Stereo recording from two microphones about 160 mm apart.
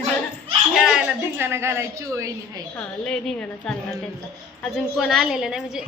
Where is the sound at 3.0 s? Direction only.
5° left (ahead or behind).